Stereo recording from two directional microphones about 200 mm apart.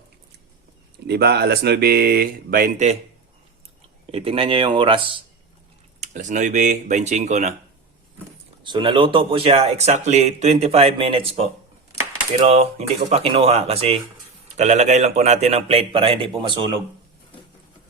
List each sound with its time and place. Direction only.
1.0 s speech: 55° right (ahead or behind); by 3.0 s 35° right (ahead or behind)
4.1 s speech: 30° right (ahead or behind)
6.0 s speech: 35° right (ahead or behind)
8.6 s speech: 25° right (ahead or behind)
12.5 s speech: 30° right (ahead or behind)